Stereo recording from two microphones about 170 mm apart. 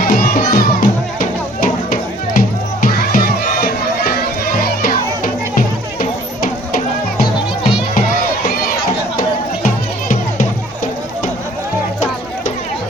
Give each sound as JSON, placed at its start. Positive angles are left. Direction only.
{"t": 0.0, "sound": "music", "side_deg": 60}
{"t": 8.4, "sound": "run", "side_deg": 60}
{"t": 9.6, "sound": "music", "side_deg": 55}